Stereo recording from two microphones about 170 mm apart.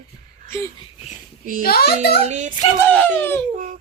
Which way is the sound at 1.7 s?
65° left (ahead or behind).